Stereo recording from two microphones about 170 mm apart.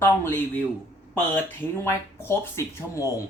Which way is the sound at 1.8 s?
15° left (ahead or behind).